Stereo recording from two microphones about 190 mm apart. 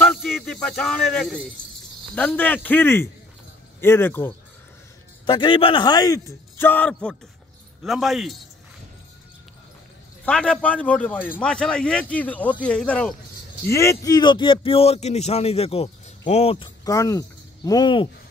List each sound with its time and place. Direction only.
0.0 s a sound: centre (ahead or behind)
2.1 s speech: 10° left (ahead or behind)
5.2 s speech: 25° left (ahead or behind); by 8.4 s centre (ahead or behind)
10.2 s speech: 5° left (ahead or behind); by 18.0 s 25° left (ahead or behind)